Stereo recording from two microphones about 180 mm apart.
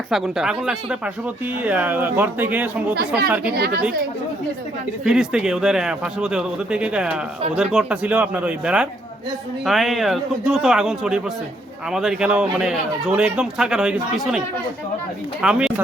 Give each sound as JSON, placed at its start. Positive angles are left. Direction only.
{"t": 0.1, "sound": "speech", "side_deg": 0}
{"t": 3.5, "sound": "speech", "side_deg": -60}
{"t": 5.0, "sound": "speech", "side_deg": 0}